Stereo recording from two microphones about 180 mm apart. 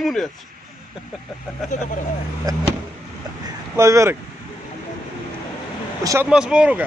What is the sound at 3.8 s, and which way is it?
Speech, 15° right (ahead or behind).